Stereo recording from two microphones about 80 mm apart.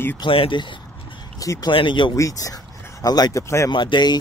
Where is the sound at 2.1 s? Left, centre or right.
Left.